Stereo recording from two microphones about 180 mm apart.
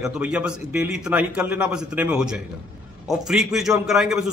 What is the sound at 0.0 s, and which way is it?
A man's voice, 5° right (ahead or behind).